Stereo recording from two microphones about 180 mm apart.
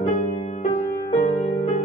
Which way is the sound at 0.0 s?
45° left (ahead or behind).